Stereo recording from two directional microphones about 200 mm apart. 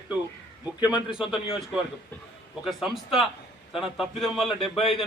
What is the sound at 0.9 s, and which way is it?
Speech, 25° left (ahead or behind).